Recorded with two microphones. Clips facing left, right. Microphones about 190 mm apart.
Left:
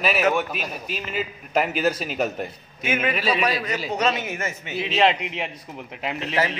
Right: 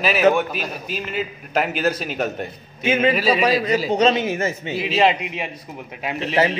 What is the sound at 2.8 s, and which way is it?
A man's voice, 30° right (ahead or behind).